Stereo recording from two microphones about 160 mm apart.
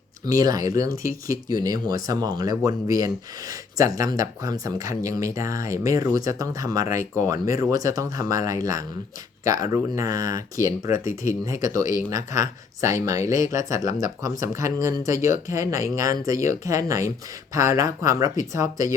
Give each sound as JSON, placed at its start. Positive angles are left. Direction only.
{"t": 0.3, "sound": "speech", "side_deg": -20}